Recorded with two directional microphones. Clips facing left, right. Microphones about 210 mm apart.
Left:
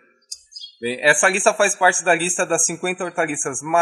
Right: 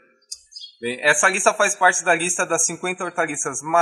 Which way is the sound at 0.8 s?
10° left (ahead or behind).